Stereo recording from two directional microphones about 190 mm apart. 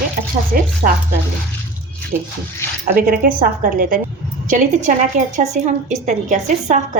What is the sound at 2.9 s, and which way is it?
A woman's voice, 50° right (ahead or behind).